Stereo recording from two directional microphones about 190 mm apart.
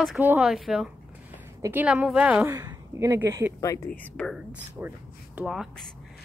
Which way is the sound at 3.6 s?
15° left (ahead or behind).